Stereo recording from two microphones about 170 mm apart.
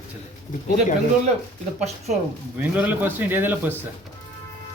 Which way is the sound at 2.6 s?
10° right (ahead or behind).